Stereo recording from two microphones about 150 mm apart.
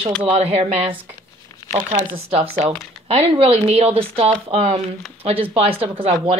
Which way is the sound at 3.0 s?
40° right (ahead or behind).